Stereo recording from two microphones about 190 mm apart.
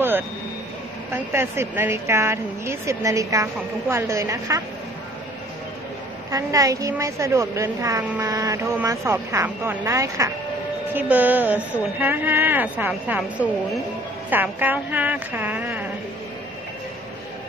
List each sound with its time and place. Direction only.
1.1 s a woman's voice: 10° right (ahead or behind)
6.3 s a woman's voice: 15° right (ahead or behind)